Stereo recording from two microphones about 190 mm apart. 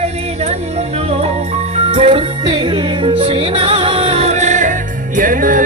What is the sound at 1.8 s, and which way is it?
Music, 30° right (ahead or behind).